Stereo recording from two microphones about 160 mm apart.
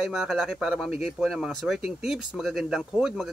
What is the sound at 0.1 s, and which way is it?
Speech, centre (ahead or behind).